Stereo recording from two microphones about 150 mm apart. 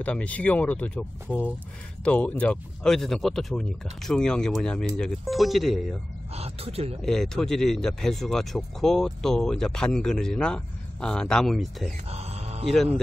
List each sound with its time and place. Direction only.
0.0 s speech: 10° left (ahead or behind)
6.3 s speech: 40° right (ahead or behind)
7.0 s speech: 5° left (ahead or behind)
12.1 s mantra: 45° right (ahead or behind)
12.6 s speech: centre (ahead or behind)